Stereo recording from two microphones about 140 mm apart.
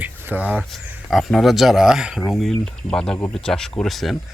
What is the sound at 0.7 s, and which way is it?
Speech, centre (ahead or behind).